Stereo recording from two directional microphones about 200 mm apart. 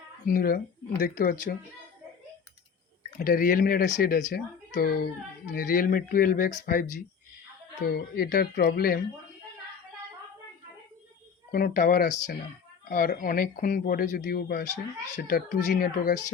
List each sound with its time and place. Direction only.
0.3 s speech: 45° left (ahead or behind)
3.2 s speech: 45° left (ahead or behind)
11.5 s speech: 45° left (ahead or behind)